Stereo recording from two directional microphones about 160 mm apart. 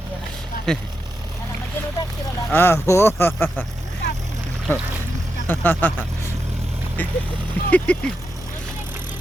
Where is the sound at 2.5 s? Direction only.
15° left (ahead or behind).